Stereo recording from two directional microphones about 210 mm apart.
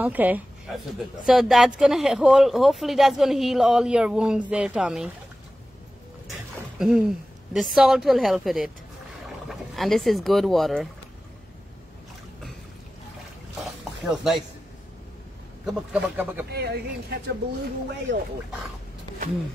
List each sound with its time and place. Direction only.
0.0 s speech: 10° right (ahead or behind)
6.3 s dog: centre (ahead or behind)
7.5 s speech: centre (ahead or behind)
13.6 s boat: centre (ahead or behind)
15.6 s a man's voice: 5° right (ahead or behind)
16.5 s a woman's voice: 50° right (ahead or behind)